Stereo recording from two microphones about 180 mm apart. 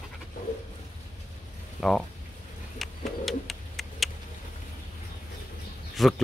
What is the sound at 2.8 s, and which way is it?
Bird, centre (ahead or behind).